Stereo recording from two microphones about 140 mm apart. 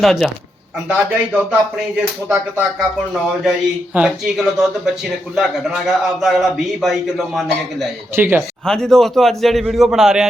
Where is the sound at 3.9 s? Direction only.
5° right (ahead or behind).